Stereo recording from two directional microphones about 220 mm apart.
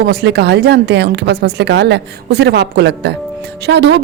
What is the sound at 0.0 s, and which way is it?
Speech, 45° right (ahead or behind).